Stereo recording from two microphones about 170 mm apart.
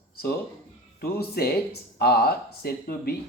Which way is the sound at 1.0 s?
65° left (ahead or behind).